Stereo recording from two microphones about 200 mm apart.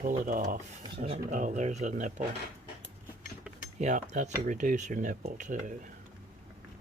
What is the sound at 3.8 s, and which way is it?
Speech, 35° right (ahead or behind).